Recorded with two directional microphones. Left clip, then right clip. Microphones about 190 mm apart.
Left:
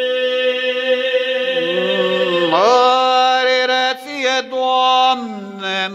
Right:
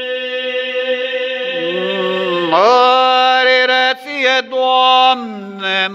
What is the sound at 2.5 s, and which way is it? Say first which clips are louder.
Mantra: right 3 dB; centre (ahead or behind).